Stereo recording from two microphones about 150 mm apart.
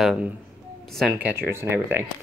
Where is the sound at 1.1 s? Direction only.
15° right (ahead or behind).